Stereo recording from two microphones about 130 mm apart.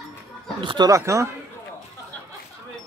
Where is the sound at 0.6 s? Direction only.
40° right (ahead or behind).